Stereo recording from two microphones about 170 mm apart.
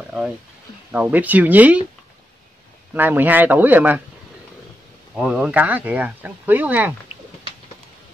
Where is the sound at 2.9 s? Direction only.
10° right (ahead or behind).